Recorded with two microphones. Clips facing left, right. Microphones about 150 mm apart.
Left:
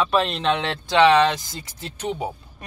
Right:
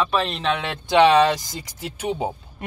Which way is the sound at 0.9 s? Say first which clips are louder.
Right 1 dB; 15° right (ahead or behind).